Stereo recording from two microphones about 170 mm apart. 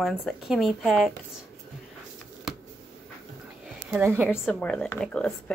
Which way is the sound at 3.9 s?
10° right (ahead or behind).